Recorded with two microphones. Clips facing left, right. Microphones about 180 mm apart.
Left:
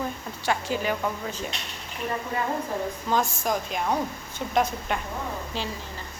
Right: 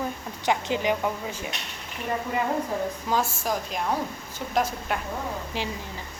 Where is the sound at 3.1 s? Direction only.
5° right (ahead or behind).